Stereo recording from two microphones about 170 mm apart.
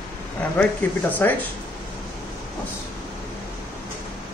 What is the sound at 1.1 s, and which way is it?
Speech, 10° left (ahead or behind).